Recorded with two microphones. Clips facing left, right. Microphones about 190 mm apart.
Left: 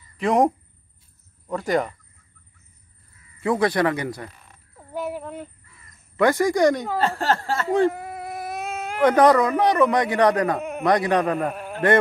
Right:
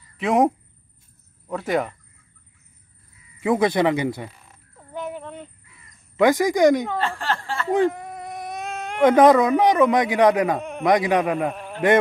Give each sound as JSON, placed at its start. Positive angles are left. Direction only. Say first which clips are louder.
{"t": 0.2, "sound": "speech", "louder": "even", "side_deg": 0}
{"t": 1.5, "sound": "speech", "louder": "left 1 dB", "side_deg": 0}
{"t": 3.3, "sound": "speech", "louder": "right 1 dB", "side_deg": -15}
{"t": 4.7, "sound": "a sound", "louder": "left 2 dB", "side_deg": 5}
{"t": 6.1, "sound": "a man's voice", "louder": "right 1 dB", "side_deg": -15}
{"t": 7.0, "sound": "speech", "louder": "left 4 dB", "side_deg": 40}
{"t": 7.9, "sound": "baby cry", "louder": "left 1 dB", "side_deg": 5}
{"t": 9.0, "sound": "a man's voice", "louder": "right 2 dB", "side_deg": -20}
{"t": 11.3, "sound": "a man's voice", "louder": "right 1 dB", "side_deg": 5}